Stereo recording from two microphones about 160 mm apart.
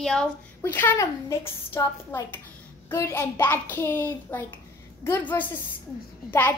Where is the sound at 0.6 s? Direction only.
15° left (ahead or behind).